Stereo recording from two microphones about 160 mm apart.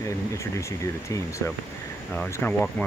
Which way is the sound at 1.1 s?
20° left (ahead or behind).